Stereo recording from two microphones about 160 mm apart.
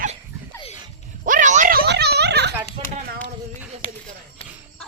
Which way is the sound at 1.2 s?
55° right (ahead or behind).